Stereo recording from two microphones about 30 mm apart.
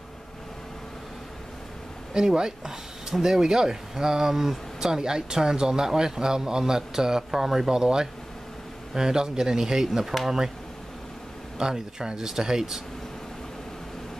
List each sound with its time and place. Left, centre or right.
2.1 s speech: right
11.5 s speech: right